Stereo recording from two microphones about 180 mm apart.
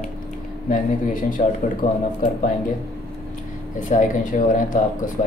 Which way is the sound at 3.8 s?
45° left (ahead or behind).